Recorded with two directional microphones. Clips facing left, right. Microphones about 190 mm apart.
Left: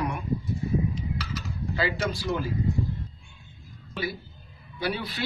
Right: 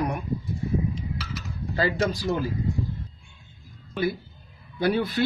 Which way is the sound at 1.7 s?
45° right (ahead or behind).